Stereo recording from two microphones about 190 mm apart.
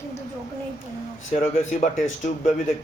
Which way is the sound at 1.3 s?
35° left (ahead or behind).